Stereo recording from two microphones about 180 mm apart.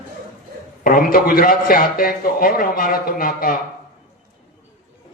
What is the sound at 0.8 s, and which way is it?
A man's voice, 55° left (ahead or behind).